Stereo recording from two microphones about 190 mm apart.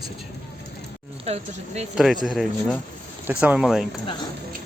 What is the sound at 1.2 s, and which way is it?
Speech, 35° right (ahead or behind).